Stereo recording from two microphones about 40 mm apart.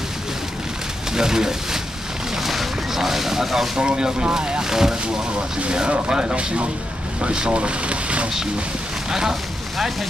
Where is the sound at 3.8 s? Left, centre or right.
Centre.